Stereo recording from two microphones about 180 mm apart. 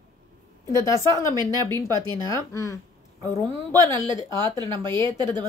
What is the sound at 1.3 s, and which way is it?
Speech, 25° right (ahead or behind).